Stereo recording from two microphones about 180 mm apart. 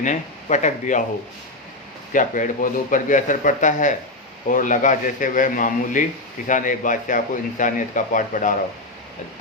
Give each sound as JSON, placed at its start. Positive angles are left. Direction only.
{"t": 0.0, "sound": "speech", "side_deg": 45}
{"t": 2.1, "sound": "speech", "side_deg": 45}